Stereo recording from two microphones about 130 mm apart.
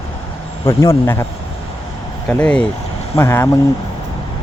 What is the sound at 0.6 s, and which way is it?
Speech, 20° left (ahead or behind).